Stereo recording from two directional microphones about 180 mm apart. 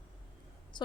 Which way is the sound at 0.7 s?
25° left (ahead or behind).